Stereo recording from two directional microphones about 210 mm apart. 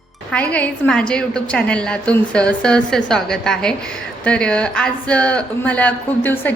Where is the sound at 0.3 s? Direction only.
5° left (ahead or behind).